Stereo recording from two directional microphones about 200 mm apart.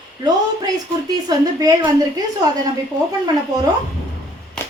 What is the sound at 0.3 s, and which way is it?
A woman's voice, 20° right (ahead or behind).